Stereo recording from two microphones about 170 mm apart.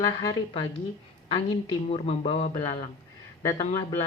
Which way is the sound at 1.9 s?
35° left (ahead or behind).